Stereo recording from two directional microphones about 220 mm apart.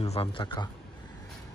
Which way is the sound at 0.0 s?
25° left (ahead or behind).